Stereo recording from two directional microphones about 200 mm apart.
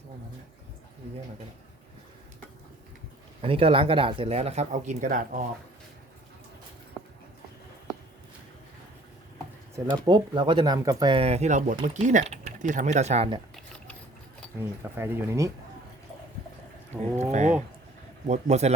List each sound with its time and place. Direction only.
3.4 s speech: 25° right (ahead or behind)
9.7 s speech: 20° right (ahead or behind)
14.9 s speech: 10° right (ahead or behind)
16.9 s speech: 15° right (ahead or behind)
17.3 s speech: 35° right (ahead or behind)